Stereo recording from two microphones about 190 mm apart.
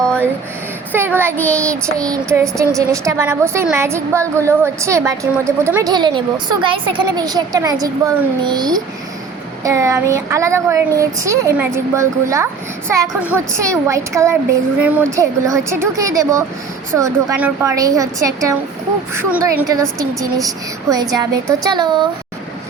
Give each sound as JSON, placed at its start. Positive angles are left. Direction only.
{"t": 0.9, "sound": "a woman's voice", "side_deg": -10}
{"t": 1.4, "sound": "child singing", "side_deg": 5}
{"t": 1.7, "sound": "a woman's voice", "side_deg": -15}